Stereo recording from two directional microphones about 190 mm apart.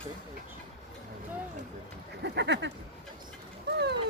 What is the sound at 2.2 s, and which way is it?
Speech, 65° right (ahead or behind).